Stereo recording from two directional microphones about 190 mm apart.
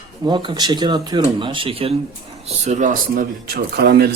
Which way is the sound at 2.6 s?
40° right (ahead or behind).